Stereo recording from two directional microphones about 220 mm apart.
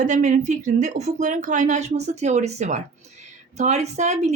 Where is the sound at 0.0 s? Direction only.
35° right (ahead or behind).